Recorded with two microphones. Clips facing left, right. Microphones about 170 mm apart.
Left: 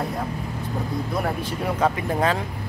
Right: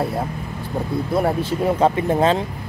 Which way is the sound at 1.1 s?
30° right (ahead or behind).